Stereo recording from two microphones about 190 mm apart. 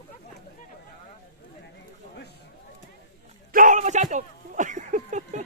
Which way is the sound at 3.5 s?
45° right (ahead or behind).